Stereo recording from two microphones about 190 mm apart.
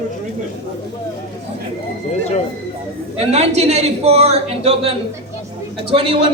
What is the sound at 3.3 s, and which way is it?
A man's voice, 35° right (ahead or behind).